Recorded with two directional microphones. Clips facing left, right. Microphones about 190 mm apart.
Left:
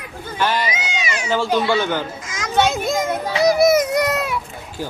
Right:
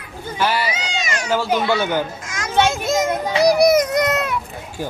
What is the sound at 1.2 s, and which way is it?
Speech, 10° right (ahead or behind).